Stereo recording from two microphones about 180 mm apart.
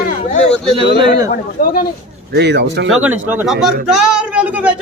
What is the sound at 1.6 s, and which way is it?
Speech, 50° left (ahead or behind).